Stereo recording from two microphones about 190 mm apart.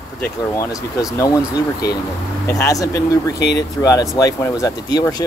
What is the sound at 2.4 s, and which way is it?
Speech, 15° left (ahead or behind).